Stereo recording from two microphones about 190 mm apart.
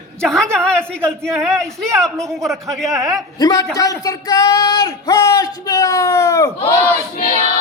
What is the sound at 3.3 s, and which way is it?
Speech, 20° left (ahead or behind).